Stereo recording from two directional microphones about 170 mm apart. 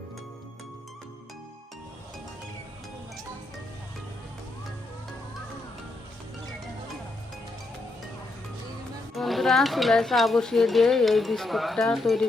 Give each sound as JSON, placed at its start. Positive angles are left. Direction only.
{"t": 9.1, "sound": "speech", "side_deg": 0}